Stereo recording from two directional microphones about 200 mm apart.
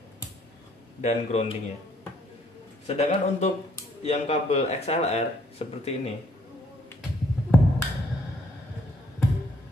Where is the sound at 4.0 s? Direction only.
30° left (ahead or behind).